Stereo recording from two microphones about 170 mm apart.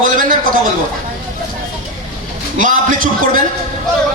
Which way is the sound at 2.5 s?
50° right (ahead or behind).